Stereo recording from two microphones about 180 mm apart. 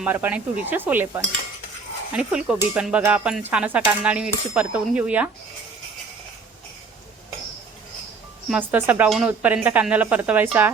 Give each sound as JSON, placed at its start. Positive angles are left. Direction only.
{"t": 0.0, "sound": "speech", "side_deg": -10}
{"t": 8.4, "sound": "speech", "side_deg": -10}